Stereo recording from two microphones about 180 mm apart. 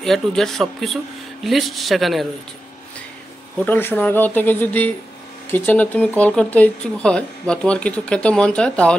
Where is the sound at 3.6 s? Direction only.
10° left (ahead or behind).